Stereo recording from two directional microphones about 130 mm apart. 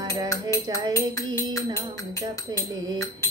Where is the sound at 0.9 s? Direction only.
20° left (ahead or behind).